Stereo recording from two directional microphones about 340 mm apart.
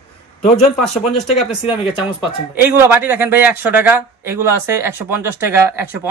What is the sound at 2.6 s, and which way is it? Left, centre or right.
Speech, centre.